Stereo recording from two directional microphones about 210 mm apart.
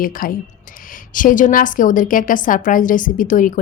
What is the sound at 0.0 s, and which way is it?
Speech, 40° left (ahead or behind).